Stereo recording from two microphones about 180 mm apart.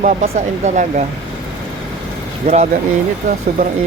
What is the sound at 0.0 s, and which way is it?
Speech, 45° right (ahead or behind).